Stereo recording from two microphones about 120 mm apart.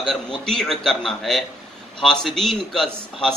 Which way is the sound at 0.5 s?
5° left (ahead or behind).